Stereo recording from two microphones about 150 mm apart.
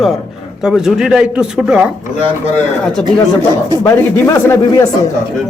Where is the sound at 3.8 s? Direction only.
20° left (ahead or behind).